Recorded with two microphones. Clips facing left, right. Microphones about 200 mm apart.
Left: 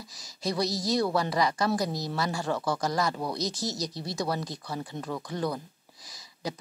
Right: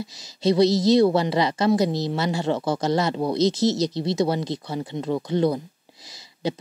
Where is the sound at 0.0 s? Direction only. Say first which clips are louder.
Right 10 dB; 25° right (ahead or behind).